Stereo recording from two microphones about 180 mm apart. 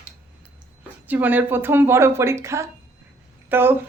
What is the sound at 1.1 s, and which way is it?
A woman's voice, 10° right (ahead or behind).